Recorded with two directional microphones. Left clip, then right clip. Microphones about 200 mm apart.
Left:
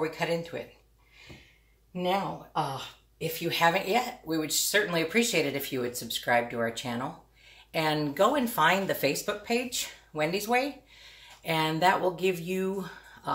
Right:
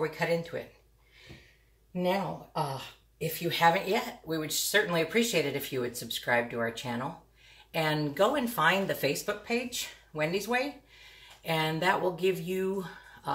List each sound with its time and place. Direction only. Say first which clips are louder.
0.0 s speech: even; 15° left (ahead or behind)
2.0 s speech: left 1 dB; 10° left (ahead or behind)